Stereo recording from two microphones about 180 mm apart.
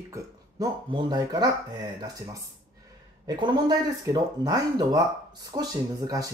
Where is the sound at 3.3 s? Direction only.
25° right (ahead or behind).